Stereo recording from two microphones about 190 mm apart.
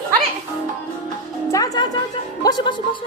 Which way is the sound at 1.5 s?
20° left (ahead or behind).